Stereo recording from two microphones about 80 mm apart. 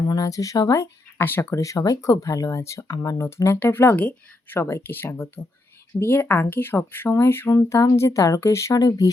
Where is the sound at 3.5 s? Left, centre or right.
Left.